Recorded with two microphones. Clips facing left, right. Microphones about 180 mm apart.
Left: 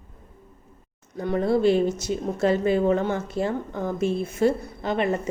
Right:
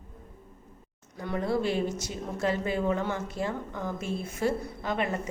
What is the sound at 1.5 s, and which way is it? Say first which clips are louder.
A woman's voice: left 8 dB; 25° left (ahead or behind).